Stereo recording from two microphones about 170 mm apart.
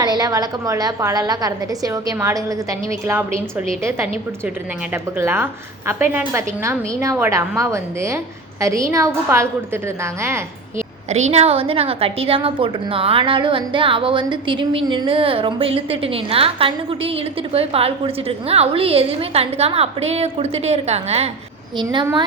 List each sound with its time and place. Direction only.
0.0 s a woman's voice: 25° right (ahead or behind)
3.8 s a woman's voice: 15° right (ahead or behind)
5.1 s a woman's voice: 15° right (ahead or behind)
11.1 s a woman's voice: 40° right (ahead or behind)
21.8 s a woman's voice: 25° right (ahead or behind)